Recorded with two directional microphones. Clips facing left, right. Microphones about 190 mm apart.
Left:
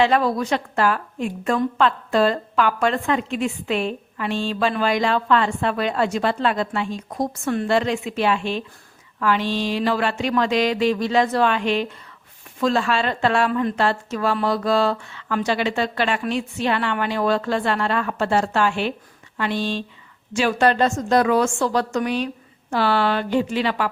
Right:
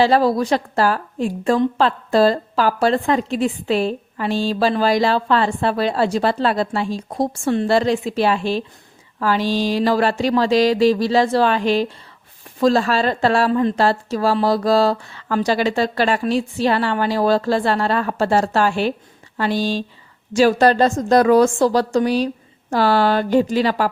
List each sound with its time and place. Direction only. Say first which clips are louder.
0.0 s a woman's voice: right 3 dB; 35° right (ahead or behind)